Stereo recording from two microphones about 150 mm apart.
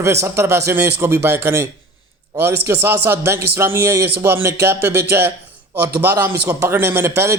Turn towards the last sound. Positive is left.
turn(degrees=-20)  # may be behind; listen again after turning